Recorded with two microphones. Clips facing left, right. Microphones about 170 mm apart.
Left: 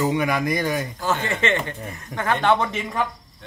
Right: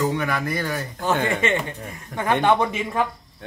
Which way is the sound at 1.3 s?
10° right (ahead or behind).